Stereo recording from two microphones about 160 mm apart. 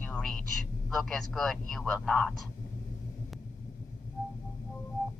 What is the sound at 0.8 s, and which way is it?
A man's voice, centre (ahead or behind).